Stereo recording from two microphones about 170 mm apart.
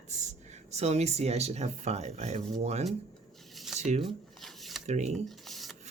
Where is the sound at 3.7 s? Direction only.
40° right (ahead or behind).